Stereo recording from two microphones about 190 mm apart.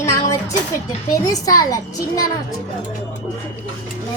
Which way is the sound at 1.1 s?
20° left (ahead or behind).